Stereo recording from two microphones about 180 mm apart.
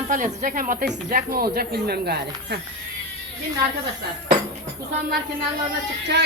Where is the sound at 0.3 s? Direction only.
50° right (ahead or behind); by 2.6 s 65° right (ahead or behind).